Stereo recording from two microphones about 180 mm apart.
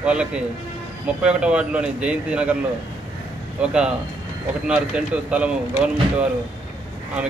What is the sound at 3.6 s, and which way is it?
Speech, 5° right (ahead or behind).